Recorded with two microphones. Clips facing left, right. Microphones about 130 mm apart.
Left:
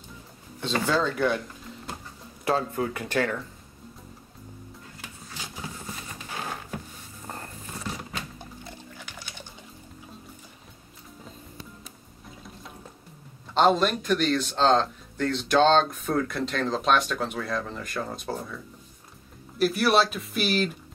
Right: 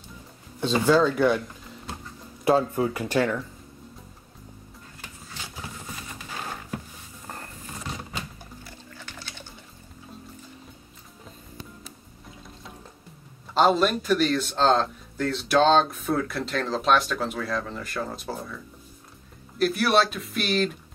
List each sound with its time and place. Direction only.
0.6 s speech: 10° right (ahead or behind)
2.4 s speech: 15° right (ahead or behind)
2.8 s speech: 25° right (ahead or behind)
8.6 s pig: 15° left (ahead or behind)
13.6 s speech: 5° right (ahead or behind)
19.6 s speech: centre (ahead or behind)